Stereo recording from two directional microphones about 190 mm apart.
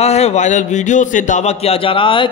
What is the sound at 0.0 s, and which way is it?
A man's voice, 35° left (ahead or behind).